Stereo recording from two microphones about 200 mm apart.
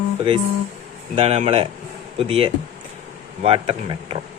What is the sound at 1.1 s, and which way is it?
Speech, 30° right (ahead or behind).